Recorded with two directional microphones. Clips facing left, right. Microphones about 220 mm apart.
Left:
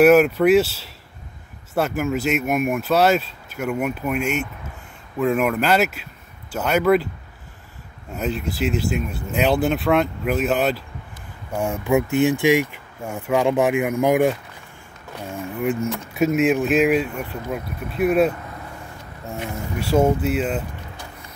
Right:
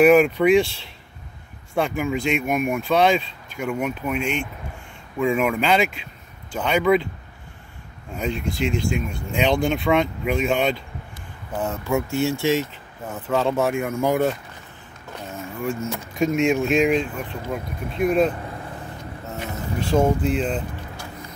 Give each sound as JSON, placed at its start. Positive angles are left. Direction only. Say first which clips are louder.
{"t": 0.0, "sound": "speech", "louder": "left 1 dB", "side_deg": 5}
{"t": 8.1, "sound": "speech", "louder": "left 1 dB", "side_deg": 5}
{"t": 15.3, "sound": "speech", "louder": "left 4 dB", "side_deg": 15}
{"t": 15.9, "sound": "speech", "louder": "left 2 dB", "side_deg": 5}
{"t": 19.4, "sound": "speech", "louder": "even", "side_deg": 5}